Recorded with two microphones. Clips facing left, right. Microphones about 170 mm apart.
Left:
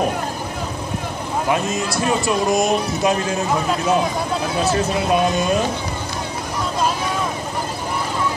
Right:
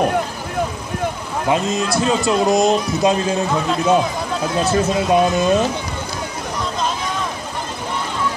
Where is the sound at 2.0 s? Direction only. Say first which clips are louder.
Right 2 dB; 20° right (ahead or behind).